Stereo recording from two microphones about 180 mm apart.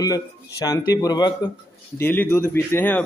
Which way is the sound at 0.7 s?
20° left (ahead or behind).